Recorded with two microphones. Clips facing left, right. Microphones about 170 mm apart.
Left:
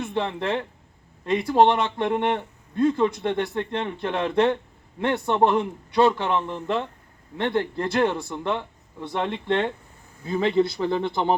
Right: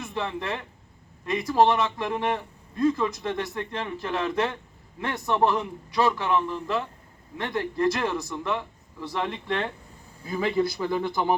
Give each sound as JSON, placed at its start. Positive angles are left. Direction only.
{"t": 0.0, "sound": "a man's voice", "side_deg": 25}